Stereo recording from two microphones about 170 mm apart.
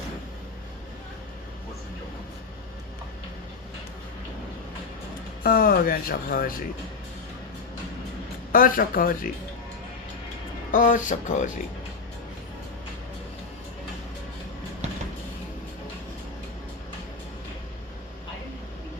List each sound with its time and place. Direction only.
5.4 s speech: 60° left (ahead or behind)
8.5 s speech: 55° left (ahead or behind)
10.7 s speech: 50° left (ahead or behind)